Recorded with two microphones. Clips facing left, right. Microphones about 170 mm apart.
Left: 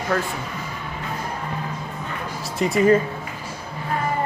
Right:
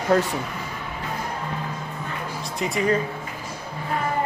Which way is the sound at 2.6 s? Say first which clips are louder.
Left 6 dB; centre (ahead or behind).